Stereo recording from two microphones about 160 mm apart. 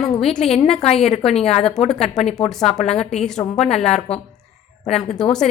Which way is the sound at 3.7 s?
45° left (ahead or behind).